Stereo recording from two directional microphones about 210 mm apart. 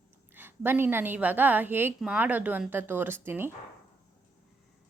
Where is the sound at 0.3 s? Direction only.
10° right (ahead or behind).